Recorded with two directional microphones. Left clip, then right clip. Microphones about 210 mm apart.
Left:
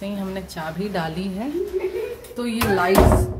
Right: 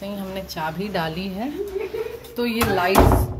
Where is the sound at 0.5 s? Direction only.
10° left (ahead or behind).